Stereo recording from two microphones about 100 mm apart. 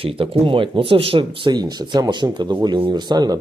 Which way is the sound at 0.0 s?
65° right (ahead or behind).